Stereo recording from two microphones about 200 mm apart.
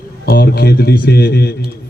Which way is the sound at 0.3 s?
50° left (ahead or behind).